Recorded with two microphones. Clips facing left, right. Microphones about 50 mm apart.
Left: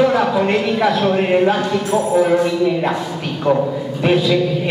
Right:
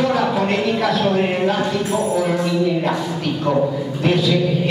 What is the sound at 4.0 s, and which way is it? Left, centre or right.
Speech, left.